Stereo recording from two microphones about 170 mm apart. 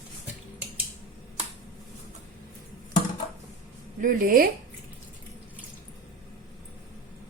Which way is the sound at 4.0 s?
55° right (ahead or behind).